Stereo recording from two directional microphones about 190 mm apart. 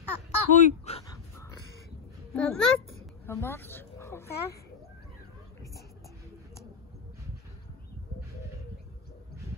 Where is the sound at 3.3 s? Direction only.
15° left (ahead or behind).